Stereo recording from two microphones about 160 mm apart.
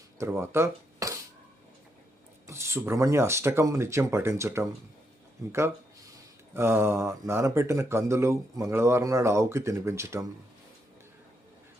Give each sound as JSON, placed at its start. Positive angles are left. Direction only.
{"t": 0.2, "sound": "speech", "side_deg": -15}
{"t": 2.5, "sound": "speech", "side_deg": -15}